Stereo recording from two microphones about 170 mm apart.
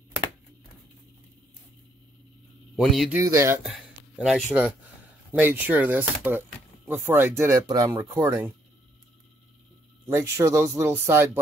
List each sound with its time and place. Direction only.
2.7 s speech: centre (ahead or behind)
3.2 s speech: 20° right (ahead or behind)
4.2 s speech: centre (ahead or behind)
10.0 s speech: 15° right (ahead or behind)